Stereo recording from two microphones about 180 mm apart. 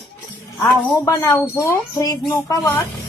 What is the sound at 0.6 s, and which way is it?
A woman's voice, 20° left (ahead or behind).